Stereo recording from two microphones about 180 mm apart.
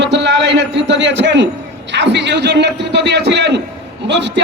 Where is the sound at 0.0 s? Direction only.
75° right (ahead or behind).